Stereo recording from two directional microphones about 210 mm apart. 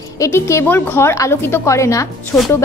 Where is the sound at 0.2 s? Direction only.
15° left (ahead or behind).